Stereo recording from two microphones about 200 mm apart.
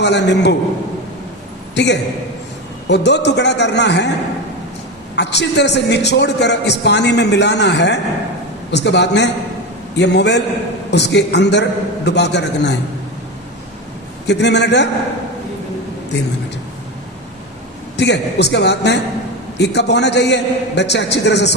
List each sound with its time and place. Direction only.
0.0 s a man's voice: 60° left (ahead or behind)
1.7 s a man's voice: 60° left (ahead or behind)
5.1 s a man's voice: 60° left (ahead or behind)
14.3 s a man's voice: 60° left (ahead or behind)
16.1 s a man's voice: 60° left (ahead or behind)
17.9 s a man's voice: 60° left (ahead or behind)